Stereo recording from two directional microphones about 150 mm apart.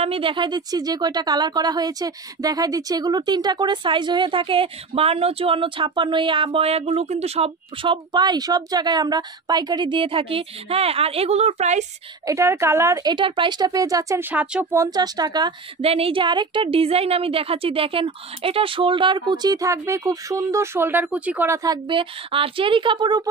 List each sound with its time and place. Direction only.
0.0 s speech: 40° right (ahead or behind)
12.3 s speech: 20° right (ahead or behind)
13.1 s speech: 35° right (ahead or behind)
14.3 s speech: 10° right (ahead or behind); by 15.5 s 25° right (ahead or behind)
15.8 s speech: 40° right (ahead or behind); by 21.5 s 10° right (ahead or behind)
21.6 s speech: 35° right (ahead or behind)